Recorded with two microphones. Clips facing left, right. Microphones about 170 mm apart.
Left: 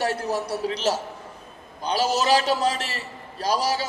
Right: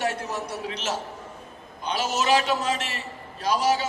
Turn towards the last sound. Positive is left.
turn(degrees=35)  # may be behind; listen again after turning